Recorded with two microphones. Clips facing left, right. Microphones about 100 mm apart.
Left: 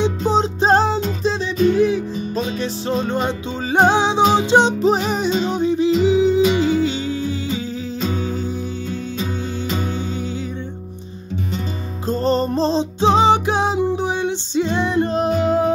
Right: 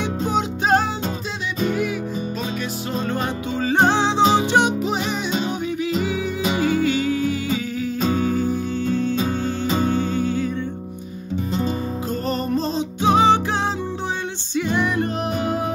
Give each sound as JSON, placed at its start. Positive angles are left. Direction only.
{"t": 0.0, "sound": "music", "side_deg": 30}
{"t": 4.8, "sound": "music", "side_deg": 40}
{"t": 9.2, "sound": "music", "side_deg": -35}
{"t": 9.9, "sound": "music", "side_deg": 20}
{"t": 12.1, "sound": "music", "side_deg": 30}